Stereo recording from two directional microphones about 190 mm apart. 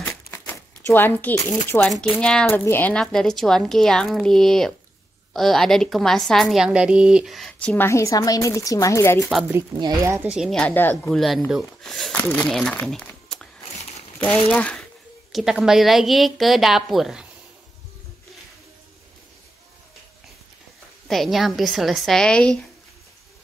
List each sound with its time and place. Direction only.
0.0 s a sound: 15° left (ahead or behind)
0.8 s a woman's voice: 10° left (ahead or behind)
9.8 s speech: 20° right (ahead or behind)
10.3 s a woman's voice: centre (ahead or behind)
21.1 s a woman's voice: centre (ahead or behind)